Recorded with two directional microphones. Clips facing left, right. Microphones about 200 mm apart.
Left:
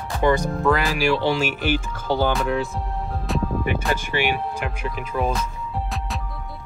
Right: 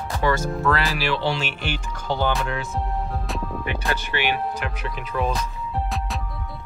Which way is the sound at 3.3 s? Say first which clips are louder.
Left 8 dB; centre (ahead or behind).